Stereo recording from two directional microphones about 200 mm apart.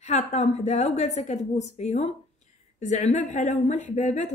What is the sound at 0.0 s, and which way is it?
A woman's voice, 35° left (ahead or behind).